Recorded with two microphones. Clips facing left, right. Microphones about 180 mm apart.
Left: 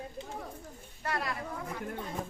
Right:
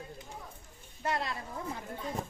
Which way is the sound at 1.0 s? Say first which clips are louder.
Right 1 dB; 25° right (ahead or behind).